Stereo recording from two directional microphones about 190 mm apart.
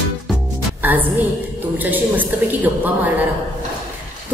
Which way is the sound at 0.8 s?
10° right (ahead or behind).